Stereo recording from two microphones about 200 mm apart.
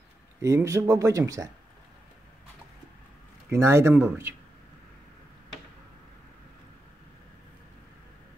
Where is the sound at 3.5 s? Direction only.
15° right (ahead or behind).